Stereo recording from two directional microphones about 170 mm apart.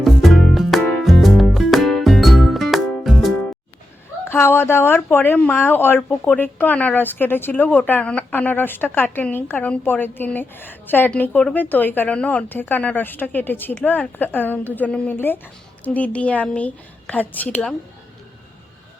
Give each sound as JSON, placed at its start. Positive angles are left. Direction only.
{"t": 0.0, "sound": "music", "side_deg": 0}
{"t": 4.3, "sound": "speech", "side_deg": 15}